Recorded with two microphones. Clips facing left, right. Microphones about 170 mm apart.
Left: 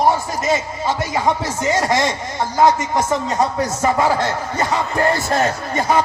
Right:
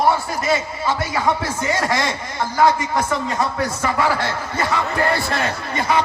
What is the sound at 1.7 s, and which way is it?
Speech, 20° left (ahead or behind).